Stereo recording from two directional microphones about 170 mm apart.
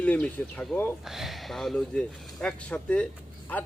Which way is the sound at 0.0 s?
10° left (ahead or behind).